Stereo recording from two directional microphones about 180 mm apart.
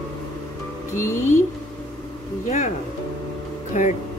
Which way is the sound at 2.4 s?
40° left (ahead or behind).